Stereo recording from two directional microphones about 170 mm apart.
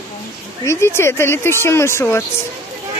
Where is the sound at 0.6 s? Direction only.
15° left (ahead or behind).